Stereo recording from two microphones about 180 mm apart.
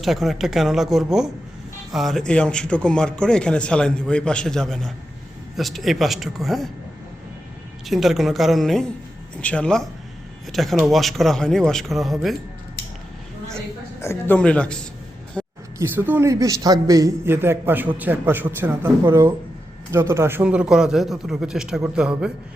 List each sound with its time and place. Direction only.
0.0 s a man's voice: centre (ahead or behind)
7.9 s a man's voice: centre (ahead or behind)
14.0 s speech: 15° left (ahead or behind)
15.4 s a sound: 5° left (ahead or behind)
15.8 s a man's voice: 10° right (ahead or behind)